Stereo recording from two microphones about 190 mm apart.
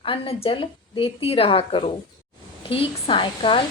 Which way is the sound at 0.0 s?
30° left (ahead or behind).